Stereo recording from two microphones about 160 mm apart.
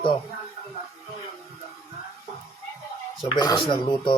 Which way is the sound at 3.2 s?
30° left (ahead or behind).